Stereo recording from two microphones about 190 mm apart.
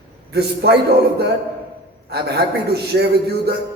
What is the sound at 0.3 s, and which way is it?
Speech, 60° right (ahead or behind).